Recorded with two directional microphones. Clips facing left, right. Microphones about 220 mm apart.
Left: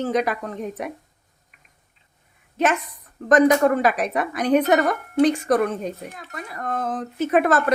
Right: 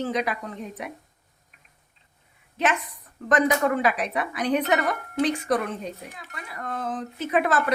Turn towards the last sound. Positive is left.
turn(degrees=45)  # may be behind; listen again after turning